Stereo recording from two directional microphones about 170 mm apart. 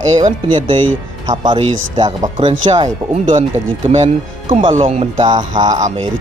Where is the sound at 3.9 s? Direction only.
35° right (ahead or behind).